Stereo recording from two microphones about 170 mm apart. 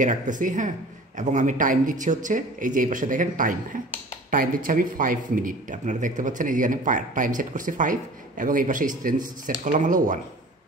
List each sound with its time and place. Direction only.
0.0 s a man's voice: 50° right (ahead or behind)